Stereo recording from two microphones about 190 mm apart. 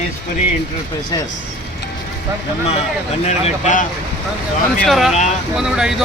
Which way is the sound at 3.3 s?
35° left (ahead or behind).